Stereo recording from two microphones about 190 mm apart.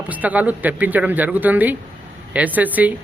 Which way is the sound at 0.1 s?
10° right (ahead or behind).